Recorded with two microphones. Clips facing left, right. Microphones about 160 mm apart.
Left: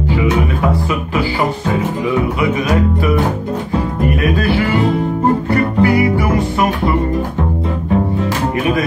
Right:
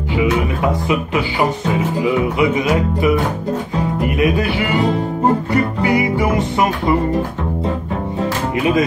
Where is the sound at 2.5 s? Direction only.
20° right (ahead or behind).